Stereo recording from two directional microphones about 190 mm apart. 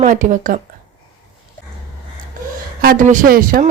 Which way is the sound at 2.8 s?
45° right (ahead or behind).